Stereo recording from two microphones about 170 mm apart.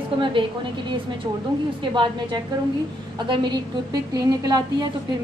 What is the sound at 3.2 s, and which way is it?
A woman's voice, 30° right (ahead or behind).